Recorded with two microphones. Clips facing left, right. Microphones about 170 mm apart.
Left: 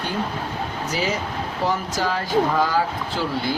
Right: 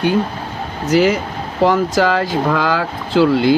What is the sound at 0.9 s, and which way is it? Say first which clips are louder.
Speech: right 13 dB; 90° right.